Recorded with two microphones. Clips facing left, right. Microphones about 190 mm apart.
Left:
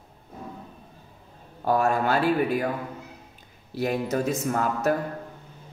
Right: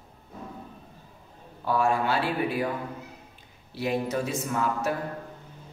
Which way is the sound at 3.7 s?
45° left (ahead or behind).